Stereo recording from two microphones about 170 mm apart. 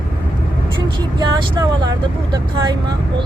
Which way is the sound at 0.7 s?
30° right (ahead or behind).